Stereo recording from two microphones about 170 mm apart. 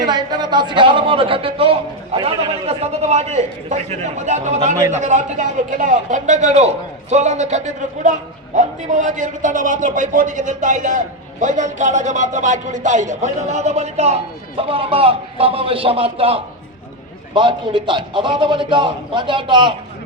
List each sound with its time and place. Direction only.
0.0 s a man's voice: 25° right (ahead or behind)